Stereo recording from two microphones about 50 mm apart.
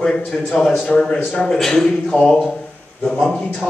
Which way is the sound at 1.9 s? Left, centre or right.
Left.